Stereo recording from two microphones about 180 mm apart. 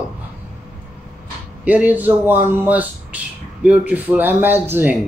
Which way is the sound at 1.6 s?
10° right (ahead or behind).